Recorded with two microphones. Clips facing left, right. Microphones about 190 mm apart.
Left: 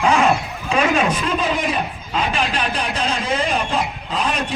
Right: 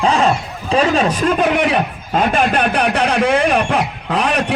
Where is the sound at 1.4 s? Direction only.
65° right (ahead or behind).